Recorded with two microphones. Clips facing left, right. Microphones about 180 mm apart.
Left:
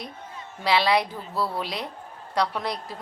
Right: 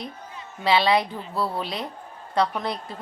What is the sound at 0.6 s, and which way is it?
A woman's voice, centre (ahead or behind).